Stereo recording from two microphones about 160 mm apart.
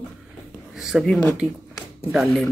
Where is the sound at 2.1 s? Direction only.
Centre (ahead or behind).